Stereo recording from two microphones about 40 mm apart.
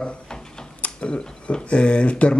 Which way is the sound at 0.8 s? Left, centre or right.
Left.